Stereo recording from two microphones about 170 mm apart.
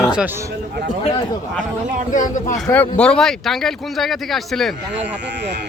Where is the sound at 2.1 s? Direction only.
50° left (ahead or behind).